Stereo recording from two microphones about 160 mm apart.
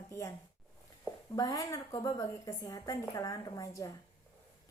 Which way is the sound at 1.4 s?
20° left (ahead or behind).